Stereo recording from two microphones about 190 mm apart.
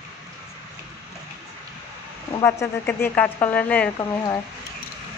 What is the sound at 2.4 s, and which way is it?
Speech, 15° left (ahead or behind).